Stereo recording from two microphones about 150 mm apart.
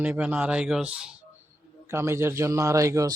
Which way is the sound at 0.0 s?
10° right (ahead or behind).